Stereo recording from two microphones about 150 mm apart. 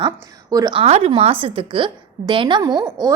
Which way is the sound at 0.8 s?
45° right (ahead or behind).